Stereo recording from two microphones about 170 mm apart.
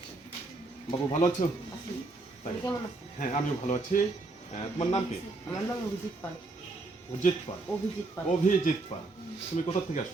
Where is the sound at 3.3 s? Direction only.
45° left (ahead or behind).